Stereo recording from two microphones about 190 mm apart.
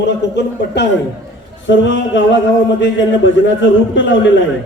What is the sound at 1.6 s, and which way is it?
A man's voice, 75° left (ahead or behind).